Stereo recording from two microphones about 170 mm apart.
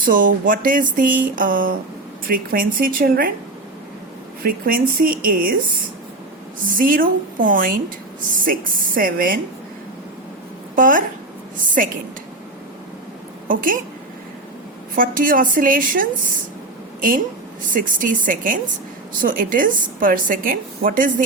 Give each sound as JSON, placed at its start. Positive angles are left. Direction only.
{"t": 0.0, "sound": "a woman's voice", "side_deg": -55}
{"t": 4.4, "sound": "speech", "side_deg": -60}
{"t": 6.7, "sound": "speech", "side_deg": -55}
{"t": 9.0, "sound": "speech", "side_deg": -55}
{"t": 10.8, "sound": "speech", "side_deg": -50}
{"t": 13.5, "sound": "a woman's voice", "side_deg": -55}
{"t": 14.9, "sound": "a woman's voice", "side_deg": -55}
{"t": 17.7, "sound": "a woman's voice", "side_deg": -50}